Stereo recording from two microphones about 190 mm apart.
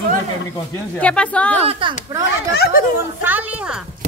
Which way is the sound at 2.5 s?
55° left (ahead or behind).